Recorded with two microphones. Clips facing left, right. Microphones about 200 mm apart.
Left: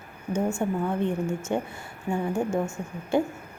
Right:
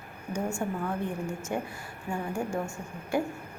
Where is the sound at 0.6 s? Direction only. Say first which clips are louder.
Left 5 dB; 25° left (ahead or behind).